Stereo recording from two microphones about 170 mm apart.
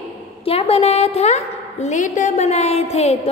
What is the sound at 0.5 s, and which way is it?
A woman's voice, 35° left (ahead or behind).